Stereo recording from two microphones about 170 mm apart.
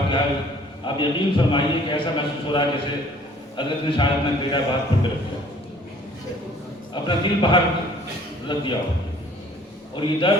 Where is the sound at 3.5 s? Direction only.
30° left (ahead or behind).